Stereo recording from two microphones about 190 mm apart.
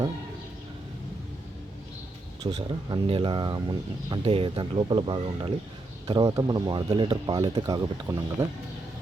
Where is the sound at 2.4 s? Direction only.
25° right (ahead or behind).